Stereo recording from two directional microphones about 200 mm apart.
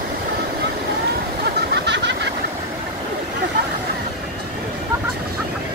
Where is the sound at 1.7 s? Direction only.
60° right (ahead or behind).